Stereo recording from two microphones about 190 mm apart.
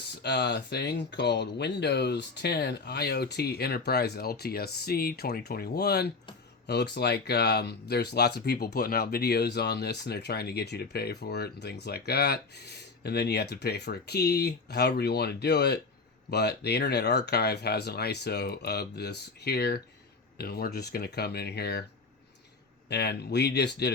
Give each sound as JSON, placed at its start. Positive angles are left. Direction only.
{"t": 0.2, "sound": "speech", "side_deg": 60}
{"t": 22.9, "sound": "speech", "side_deg": 60}